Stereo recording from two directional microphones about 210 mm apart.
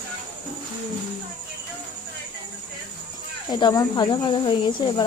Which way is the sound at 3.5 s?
20° left (ahead or behind).